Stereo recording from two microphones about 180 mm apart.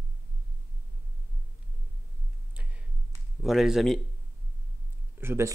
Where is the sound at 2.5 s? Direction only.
5° right (ahead or behind).